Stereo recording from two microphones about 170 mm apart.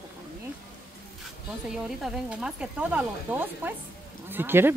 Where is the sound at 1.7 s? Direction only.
5° right (ahead or behind).